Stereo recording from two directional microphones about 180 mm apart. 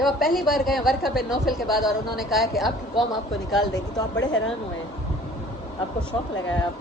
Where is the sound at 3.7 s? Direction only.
90° left.